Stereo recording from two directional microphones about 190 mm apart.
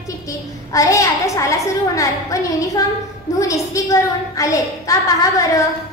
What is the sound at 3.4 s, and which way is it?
A woman's voice, 15° left (ahead or behind).